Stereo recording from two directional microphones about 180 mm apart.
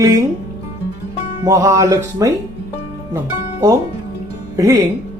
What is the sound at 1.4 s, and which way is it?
Speech, 15° right (ahead or behind).